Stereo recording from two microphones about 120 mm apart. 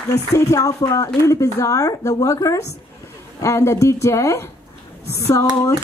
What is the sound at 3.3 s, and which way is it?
Speech, 25° left (ahead or behind).